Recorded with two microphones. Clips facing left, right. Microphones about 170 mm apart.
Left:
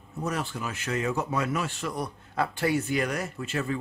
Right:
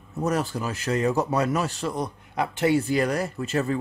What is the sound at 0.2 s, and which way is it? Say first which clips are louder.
Speech: right 6 dB; 40° right (ahead or behind).